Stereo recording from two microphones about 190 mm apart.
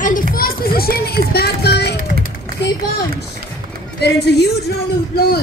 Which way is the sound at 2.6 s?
65° left (ahead or behind).